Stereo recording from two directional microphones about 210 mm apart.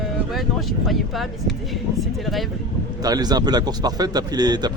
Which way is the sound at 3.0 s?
20° right (ahead or behind).